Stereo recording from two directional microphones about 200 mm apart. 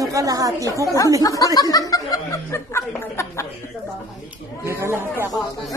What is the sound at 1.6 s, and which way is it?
Chuckle, 20° left (ahead or behind).